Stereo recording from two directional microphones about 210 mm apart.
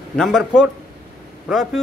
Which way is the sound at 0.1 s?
Centre (ahead or behind).